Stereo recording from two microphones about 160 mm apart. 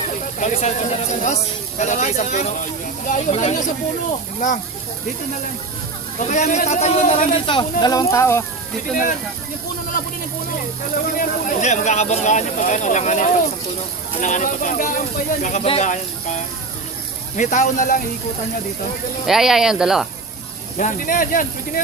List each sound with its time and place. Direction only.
0.3 s speech: 45° left (ahead or behind)
6.1 s speech: 50° left (ahead or behind)
7.4 s speech: 30° left (ahead or behind)
10.9 s speech: 60° left (ahead or behind)
19.2 s speech: centre (ahead or behind)
20.7 s speech: 55° left (ahead or behind)